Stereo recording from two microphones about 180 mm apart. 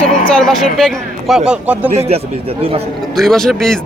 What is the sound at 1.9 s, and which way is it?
Speech, 35° right (ahead or behind).